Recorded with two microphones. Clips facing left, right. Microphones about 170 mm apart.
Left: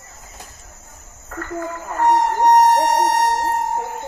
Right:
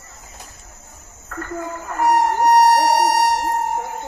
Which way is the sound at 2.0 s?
10° right (ahead or behind).